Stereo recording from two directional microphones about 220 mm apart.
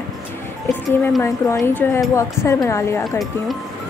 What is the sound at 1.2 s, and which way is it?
Speech, 15° left (ahead or behind).